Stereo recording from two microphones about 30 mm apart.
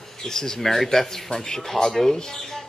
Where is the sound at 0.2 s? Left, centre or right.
Centre.